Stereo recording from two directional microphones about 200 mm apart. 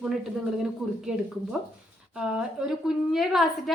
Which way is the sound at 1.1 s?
5° right (ahead or behind).